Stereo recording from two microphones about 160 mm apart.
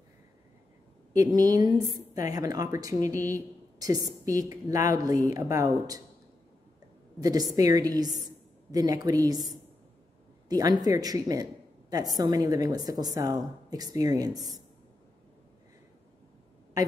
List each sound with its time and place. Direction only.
1.1 s a woman's voice: 25° right (ahead or behind)
7.2 s a woman's voice: 20° right (ahead or behind)